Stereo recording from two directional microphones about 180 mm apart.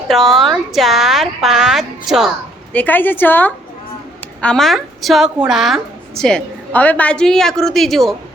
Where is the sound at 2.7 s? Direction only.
10° left (ahead or behind).